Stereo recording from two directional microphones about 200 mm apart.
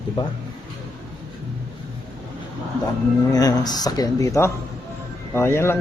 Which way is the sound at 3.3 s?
20° left (ahead or behind).